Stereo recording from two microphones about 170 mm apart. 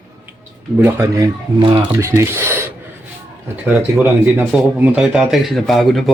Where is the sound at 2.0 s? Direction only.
15° right (ahead or behind).